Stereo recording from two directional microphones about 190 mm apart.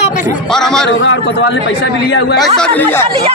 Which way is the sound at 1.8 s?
60° left (ahead or behind).